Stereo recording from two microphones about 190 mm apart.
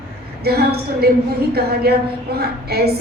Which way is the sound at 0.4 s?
55° right (ahead or behind).